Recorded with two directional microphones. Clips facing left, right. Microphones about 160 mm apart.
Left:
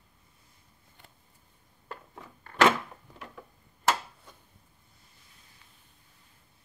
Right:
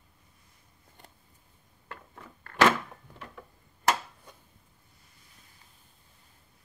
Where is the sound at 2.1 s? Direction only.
15° left (ahead or behind).